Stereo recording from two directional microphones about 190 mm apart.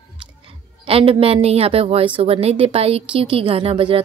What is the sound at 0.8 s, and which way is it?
A woman's voice, 30° right (ahead or behind).